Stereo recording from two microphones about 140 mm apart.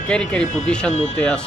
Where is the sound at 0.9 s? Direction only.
50° left (ahead or behind).